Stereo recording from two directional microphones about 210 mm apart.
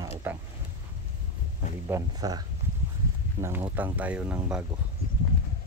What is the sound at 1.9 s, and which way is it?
Speech, 20° right (ahead or behind).